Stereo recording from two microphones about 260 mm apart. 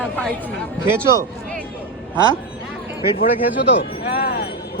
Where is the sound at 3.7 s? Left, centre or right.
Left.